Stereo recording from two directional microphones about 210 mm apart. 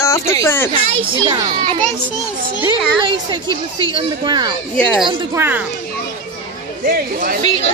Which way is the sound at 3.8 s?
20° right (ahead or behind).